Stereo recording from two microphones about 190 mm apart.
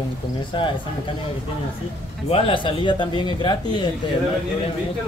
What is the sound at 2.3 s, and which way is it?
Speech, 30° left (ahead or behind).